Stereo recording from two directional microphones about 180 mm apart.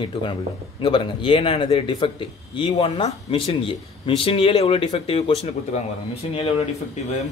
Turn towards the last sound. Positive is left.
turn(degrees=35)  # may be behind; listen again after turning